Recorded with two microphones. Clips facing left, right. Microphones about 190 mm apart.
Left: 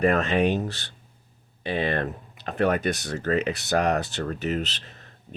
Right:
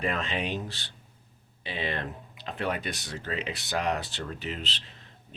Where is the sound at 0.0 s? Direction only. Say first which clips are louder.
Left 10 dB; 50° left (ahead or behind).